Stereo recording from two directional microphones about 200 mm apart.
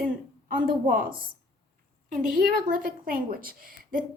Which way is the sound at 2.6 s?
45° right (ahead or behind).